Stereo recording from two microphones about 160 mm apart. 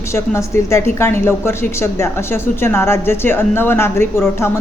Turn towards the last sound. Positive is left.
turn(degrees=15)  # may be behind; listen again after turning